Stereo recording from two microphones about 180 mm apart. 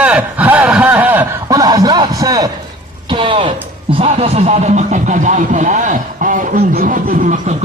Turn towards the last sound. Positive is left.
turn(degrees=-50)  # may be behind; listen again after turning